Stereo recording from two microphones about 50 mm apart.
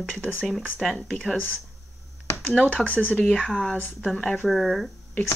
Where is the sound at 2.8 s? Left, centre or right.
Left.